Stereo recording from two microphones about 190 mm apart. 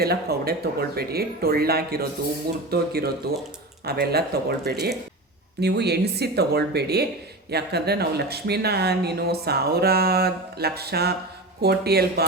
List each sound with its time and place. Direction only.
0.0 s speech: 55° right (ahead or behind)